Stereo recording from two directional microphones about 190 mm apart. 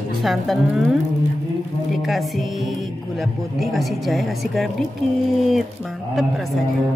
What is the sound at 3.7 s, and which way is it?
Speech, centre (ahead or behind).